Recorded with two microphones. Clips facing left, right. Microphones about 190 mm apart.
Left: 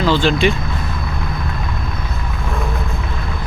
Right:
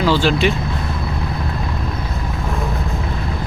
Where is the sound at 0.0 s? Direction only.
10° right (ahead or behind).